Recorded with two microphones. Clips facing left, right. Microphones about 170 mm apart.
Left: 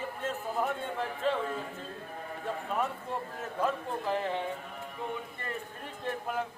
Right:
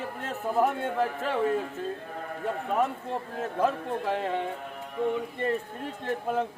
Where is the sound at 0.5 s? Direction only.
60° right (ahead or behind).